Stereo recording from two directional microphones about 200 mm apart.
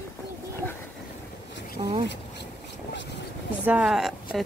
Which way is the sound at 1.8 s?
20° right (ahead or behind).